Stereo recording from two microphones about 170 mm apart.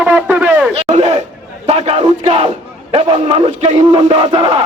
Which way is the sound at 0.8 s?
40° right (ahead or behind).